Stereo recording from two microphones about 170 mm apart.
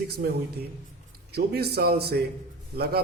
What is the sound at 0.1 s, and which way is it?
A man's voice, 70° right (ahead or behind).